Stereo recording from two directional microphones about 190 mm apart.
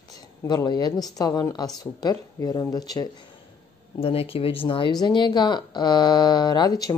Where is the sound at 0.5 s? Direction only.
20° left (ahead or behind).